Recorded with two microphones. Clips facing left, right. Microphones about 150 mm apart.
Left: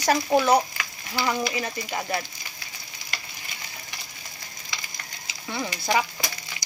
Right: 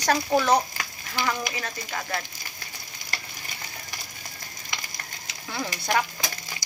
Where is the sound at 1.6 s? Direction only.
15° left (ahead or behind).